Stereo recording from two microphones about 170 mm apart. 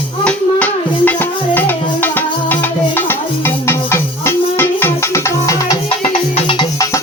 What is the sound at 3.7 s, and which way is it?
Music, 15° left (ahead or behind).